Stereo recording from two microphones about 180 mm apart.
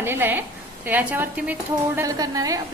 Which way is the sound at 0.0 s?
10° right (ahead or behind).